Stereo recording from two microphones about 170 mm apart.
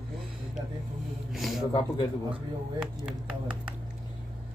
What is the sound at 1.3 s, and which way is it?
Speech, centre (ahead or behind).